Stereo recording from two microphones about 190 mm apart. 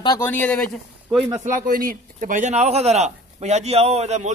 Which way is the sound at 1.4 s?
45° right (ahead or behind).